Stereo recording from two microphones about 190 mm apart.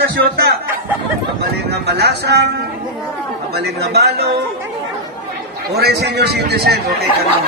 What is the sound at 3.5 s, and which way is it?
Speech, 60° right (ahead or behind).